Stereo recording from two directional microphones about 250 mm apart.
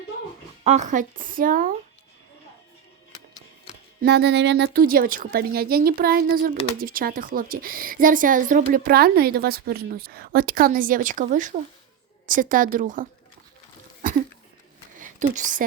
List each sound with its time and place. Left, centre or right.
0.6 s a woman's voice: right
4.0 s a woman's voice: right
14.0 s a sound: right